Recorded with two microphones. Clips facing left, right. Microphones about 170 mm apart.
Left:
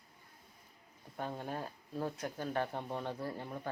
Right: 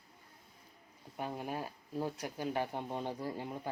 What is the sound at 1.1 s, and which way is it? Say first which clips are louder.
Speech: right 1 dB; 10° right (ahead or behind).